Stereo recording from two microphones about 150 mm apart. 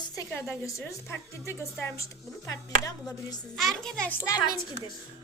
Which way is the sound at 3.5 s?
Centre (ahead or behind).